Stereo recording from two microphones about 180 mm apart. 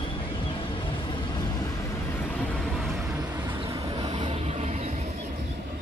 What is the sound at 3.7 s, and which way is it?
Vehicle, 25° right (ahead or behind).